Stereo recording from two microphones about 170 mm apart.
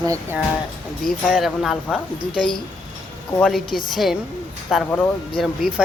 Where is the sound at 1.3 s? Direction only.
Centre (ahead or behind).